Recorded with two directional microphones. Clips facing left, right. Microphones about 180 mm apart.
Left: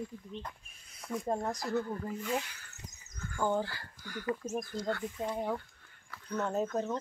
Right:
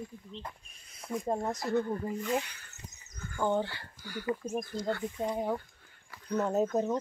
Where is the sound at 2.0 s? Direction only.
10° right (ahead or behind).